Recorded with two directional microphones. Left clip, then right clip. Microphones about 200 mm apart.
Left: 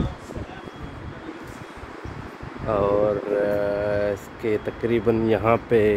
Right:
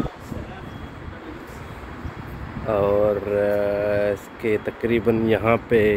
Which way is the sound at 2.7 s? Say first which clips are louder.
Right 1 dB; centre (ahead or behind).